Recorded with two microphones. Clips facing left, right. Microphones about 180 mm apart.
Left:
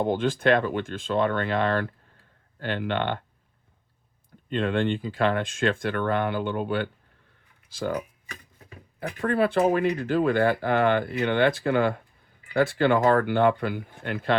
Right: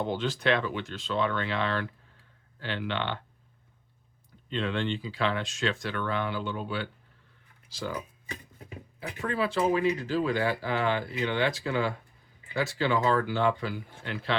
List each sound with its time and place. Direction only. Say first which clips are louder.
0.0 s speech: left 6 dB; 50° left (ahead or behind)
4.4 s speech: left 5 dB; 50° left (ahead or behind)
8.3 s a sound: right 4 dB; 20° right (ahead or behind)
9.2 s speech: left 5 dB; 55° left (ahead or behind)